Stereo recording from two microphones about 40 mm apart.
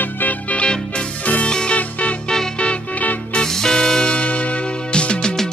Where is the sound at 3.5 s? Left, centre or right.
Centre.